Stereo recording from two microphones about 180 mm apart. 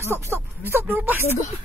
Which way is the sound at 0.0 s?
15° right (ahead or behind).